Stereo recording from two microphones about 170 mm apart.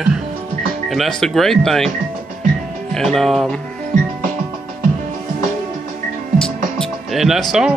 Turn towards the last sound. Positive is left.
turn(degrees=-5)  # may be behind; listen again after turning